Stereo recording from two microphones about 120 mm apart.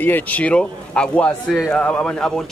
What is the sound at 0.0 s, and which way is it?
A man's voice, 15° left (ahead or behind).